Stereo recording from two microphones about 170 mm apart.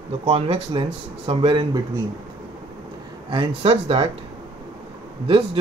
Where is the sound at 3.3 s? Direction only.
30° right (ahead or behind).